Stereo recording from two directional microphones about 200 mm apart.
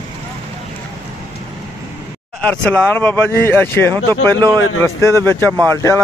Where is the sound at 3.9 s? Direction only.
20° right (ahead or behind).